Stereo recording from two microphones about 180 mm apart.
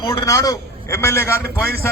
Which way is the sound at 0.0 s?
20° left (ahead or behind).